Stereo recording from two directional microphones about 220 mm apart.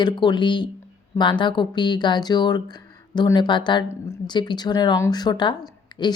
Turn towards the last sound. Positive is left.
turn(degrees=20)  # may be behind; listen again after turning